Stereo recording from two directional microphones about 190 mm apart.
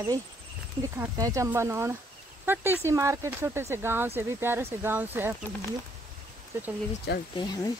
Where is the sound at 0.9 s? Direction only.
15° right (ahead or behind).